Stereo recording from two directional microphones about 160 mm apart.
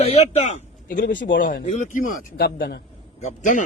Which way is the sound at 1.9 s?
70° left (ahead or behind).